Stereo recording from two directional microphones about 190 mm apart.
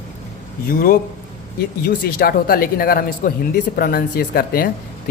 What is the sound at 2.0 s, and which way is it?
Speech, 50° left (ahead or behind).